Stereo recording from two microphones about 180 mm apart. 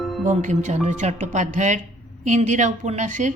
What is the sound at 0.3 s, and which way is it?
A woman's voice, 40° right (ahead or behind).